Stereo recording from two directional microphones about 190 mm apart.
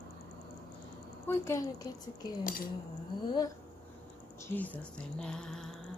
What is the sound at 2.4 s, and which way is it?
Speech, 45° left (ahead or behind).